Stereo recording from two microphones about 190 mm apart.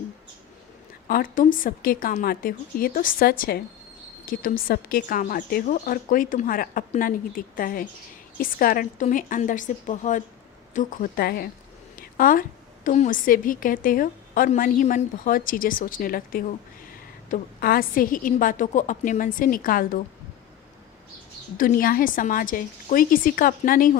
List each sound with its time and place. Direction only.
1.0 s a woman's voice: 50° left (ahead or behind)
21.6 s a woman's voice: 45° left (ahead or behind)